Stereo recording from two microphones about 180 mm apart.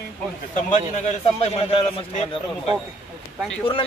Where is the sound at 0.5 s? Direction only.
40° left (ahead or behind).